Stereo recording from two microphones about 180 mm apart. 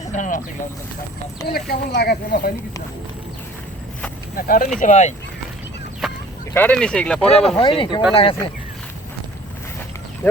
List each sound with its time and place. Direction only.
0.1 s speech: 45° left (ahead or behind)
1.5 s speech: 60° left (ahead or behind)
4.4 s speech: 50° left (ahead or behind)
4.8 s speech: 40° left (ahead or behind)
6.5 s speech: 10° left (ahead or behind)
7.6 s speech: 30° left (ahead or behind)